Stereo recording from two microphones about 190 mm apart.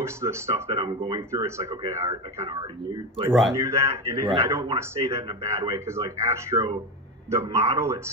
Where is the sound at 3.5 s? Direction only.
15° right (ahead or behind).